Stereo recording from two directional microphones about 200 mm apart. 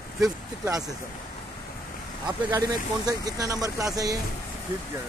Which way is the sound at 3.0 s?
20° right (ahead or behind).